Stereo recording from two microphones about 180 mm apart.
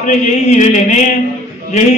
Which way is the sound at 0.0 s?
40° left (ahead or behind).